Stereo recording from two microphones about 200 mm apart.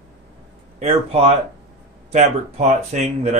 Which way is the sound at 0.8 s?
30° right (ahead or behind).